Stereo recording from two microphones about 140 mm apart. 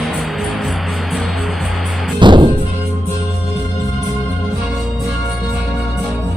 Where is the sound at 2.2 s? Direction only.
35° right (ahead or behind).